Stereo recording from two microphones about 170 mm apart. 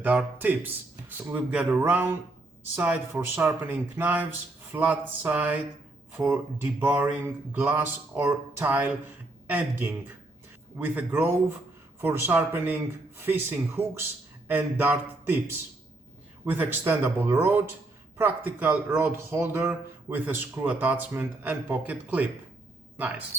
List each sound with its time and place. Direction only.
0.0 s a man's voice: 10° right (ahead or behind)
16.5 s a man's voice: 10° right (ahead or behind)